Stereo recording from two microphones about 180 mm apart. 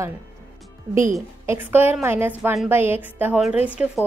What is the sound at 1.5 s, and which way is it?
A woman's voice, 10° right (ahead or behind).